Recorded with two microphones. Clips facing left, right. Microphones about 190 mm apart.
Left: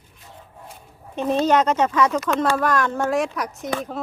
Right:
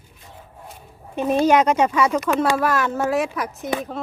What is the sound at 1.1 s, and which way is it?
Speech, 10° right (ahead or behind).